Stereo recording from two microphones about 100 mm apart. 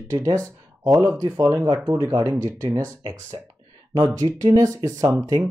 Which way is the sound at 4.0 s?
35° right (ahead or behind).